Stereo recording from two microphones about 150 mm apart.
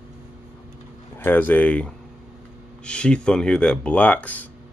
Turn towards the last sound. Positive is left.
turn(degrees=10)  # may be behind; listen again after turning